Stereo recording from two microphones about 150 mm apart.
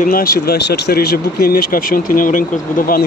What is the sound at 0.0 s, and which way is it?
Speech, 75° left (ahead or behind).